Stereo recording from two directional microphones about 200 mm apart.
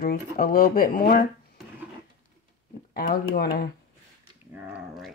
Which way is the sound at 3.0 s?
50° left (ahead or behind).